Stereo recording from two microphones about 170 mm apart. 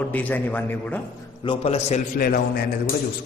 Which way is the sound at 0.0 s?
10° left (ahead or behind).